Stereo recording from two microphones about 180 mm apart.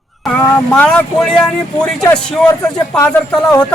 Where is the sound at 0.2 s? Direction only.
5° left (ahead or behind).